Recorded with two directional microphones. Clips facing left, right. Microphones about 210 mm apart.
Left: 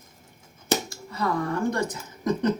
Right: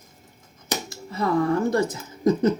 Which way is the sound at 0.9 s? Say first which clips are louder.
Right 4 dB; 20° right (ahead or behind).